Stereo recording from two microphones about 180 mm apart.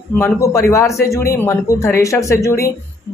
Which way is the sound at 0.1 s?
15° left (ahead or behind).